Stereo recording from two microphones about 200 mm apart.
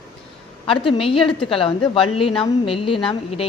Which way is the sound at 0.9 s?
25° left (ahead or behind).